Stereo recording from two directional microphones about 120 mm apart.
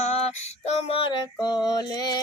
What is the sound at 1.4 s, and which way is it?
Female singing, 35° left (ahead or behind).